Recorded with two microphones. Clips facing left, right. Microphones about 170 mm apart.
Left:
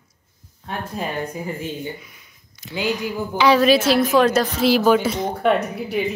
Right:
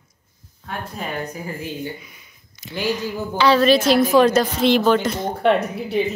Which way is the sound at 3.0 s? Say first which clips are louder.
Left 1 dB; 15° left (ahead or behind).